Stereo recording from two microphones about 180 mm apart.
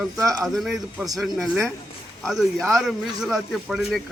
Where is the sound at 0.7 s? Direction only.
15° right (ahead or behind).